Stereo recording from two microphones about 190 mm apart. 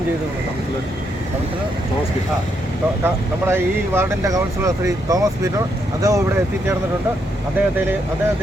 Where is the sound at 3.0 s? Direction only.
10° right (ahead or behind).